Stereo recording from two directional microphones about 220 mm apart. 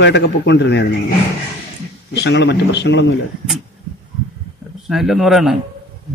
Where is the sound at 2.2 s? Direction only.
50° left (ahead or behind).